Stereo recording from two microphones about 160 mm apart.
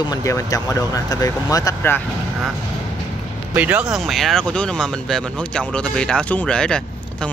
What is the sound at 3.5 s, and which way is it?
Speech, 10° right (ahead or behind).